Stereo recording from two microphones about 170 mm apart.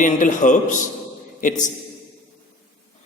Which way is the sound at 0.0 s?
50° left (ahead or behind).